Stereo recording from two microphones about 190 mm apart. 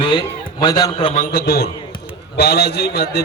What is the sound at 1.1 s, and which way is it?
A man's voice, 50° left (ahead or behind).